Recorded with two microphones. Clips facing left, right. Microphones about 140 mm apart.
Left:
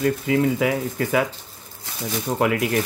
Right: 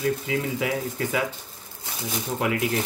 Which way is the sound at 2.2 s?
60° left (ahead or behind).